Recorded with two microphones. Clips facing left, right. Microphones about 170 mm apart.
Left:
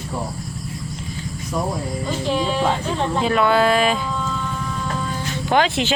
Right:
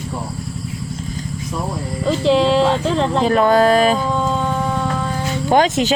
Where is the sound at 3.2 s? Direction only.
40° right (ahead or behind).